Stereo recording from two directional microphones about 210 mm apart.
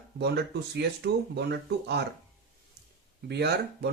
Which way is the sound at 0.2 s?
50° right (ahead or behind).